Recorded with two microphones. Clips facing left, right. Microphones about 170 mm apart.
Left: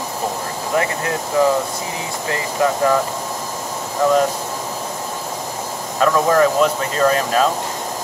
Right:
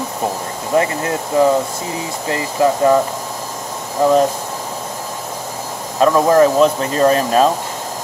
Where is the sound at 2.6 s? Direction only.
25° right (ahead or behind).